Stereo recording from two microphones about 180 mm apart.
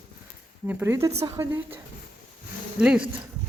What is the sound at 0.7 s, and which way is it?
Speech, 10° right (ahead or behind).